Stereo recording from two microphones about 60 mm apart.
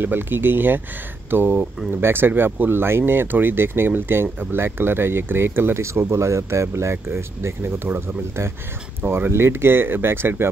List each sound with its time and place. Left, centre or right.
0.0 s speech: right